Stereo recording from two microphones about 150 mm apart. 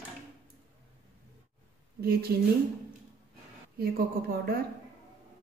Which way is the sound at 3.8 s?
90° right.